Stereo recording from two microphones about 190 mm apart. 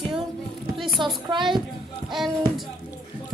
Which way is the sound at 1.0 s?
25° right (ahead or behind).